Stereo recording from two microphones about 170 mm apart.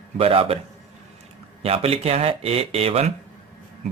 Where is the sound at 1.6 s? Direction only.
35° right (ahead or behind).